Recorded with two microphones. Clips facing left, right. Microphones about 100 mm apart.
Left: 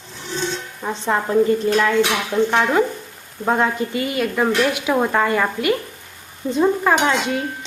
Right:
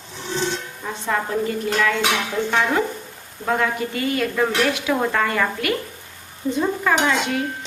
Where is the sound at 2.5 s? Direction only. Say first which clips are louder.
Left 1 dB; 15° left (ahead or behind).